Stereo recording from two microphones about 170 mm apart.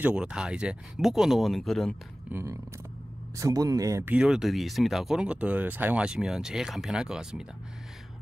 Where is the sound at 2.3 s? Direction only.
15° right (ahead or behind).